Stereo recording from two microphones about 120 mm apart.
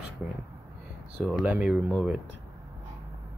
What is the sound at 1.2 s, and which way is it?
Speech, 10° right (ahead or behind).